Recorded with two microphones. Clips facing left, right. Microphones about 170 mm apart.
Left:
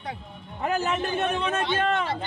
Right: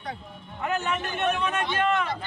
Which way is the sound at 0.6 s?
35° left (ahead or behind).